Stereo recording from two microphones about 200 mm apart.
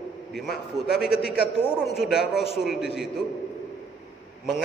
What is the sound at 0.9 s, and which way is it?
A man's voice, 5° right (ahead or behind).